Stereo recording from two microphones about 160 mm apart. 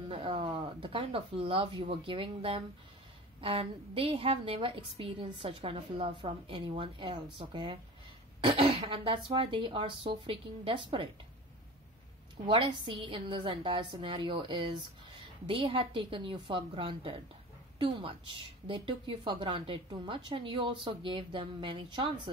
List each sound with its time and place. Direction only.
0.1 s a woman's voice: 35° right (ahead or behind)
12.4 s a woman's voice: 30° right (ahead or behind)